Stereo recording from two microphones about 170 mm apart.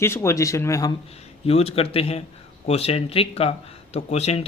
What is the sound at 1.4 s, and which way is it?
Speech, 35° left (ahead or behind).